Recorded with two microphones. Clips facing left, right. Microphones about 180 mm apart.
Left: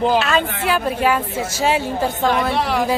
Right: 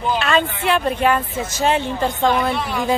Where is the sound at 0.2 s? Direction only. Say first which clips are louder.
Even; 5° left (ahead or behind).